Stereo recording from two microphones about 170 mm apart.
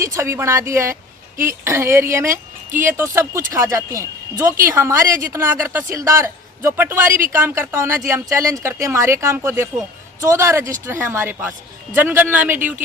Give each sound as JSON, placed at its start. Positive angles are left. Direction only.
{"t": 0.0, "sound": "a man's voice", "side_deg": -15}